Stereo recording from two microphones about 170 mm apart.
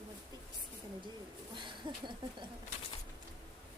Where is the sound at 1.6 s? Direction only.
30° right (ahead or behind).